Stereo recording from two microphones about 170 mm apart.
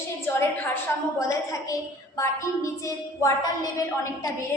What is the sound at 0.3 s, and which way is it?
Speech, 10° left (ahead or behind).